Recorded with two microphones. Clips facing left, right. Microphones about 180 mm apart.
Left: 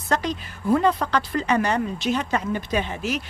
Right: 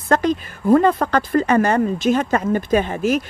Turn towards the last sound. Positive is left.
turn(degrees=-50)  # may be behind; listen again after turning